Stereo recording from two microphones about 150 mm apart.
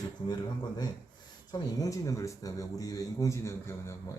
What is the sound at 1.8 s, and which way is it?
A man's voice, 20° left (ahead or behind).